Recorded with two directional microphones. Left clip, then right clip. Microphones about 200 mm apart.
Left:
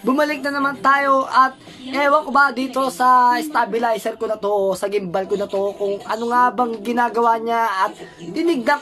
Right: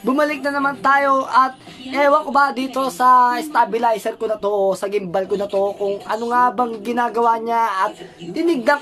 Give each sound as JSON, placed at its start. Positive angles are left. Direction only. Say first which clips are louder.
{"t": 0.0, "sound": "a woman's voice", "louder": "even", "side_deg": 0}